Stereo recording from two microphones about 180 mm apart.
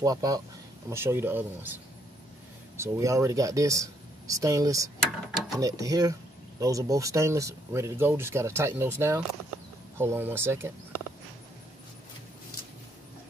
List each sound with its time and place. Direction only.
0.0 s speech: 20° right (ahead or behind)
2.8 s speech: 15° right (ahead or behind)
5.0 s speech: centre (ahead or behind)
5.6 s speech: 20° right (ahead or behind)